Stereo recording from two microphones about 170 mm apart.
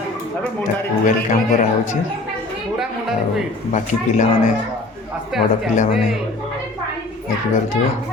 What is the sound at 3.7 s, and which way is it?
Speech, 45° left (ahead or behind).